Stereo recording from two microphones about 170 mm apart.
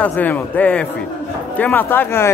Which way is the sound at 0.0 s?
10° left (ahead or behind).